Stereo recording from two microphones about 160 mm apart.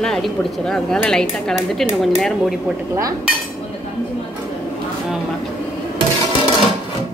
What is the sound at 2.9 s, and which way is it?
Dishes, 20° right (ahead or behind).